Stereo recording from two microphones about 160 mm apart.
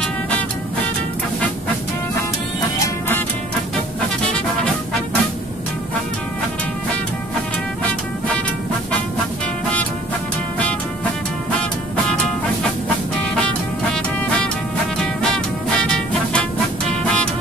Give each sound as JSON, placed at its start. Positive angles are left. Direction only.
{"t": 2.8, "sound": "music", "side_deg": 15}
{"t": 15.0, "sound": "music", "side_deg": 5}